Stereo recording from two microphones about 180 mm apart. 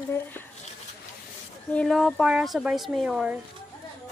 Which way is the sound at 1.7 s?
5° left (ahead or behind).